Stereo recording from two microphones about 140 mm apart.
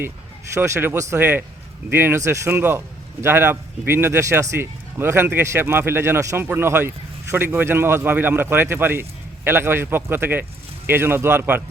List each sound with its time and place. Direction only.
0.5 s a man's voice: 20° right (ahead or behind)